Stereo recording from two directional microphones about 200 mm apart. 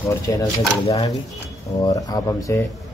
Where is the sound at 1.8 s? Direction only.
20° left (ahead or behind).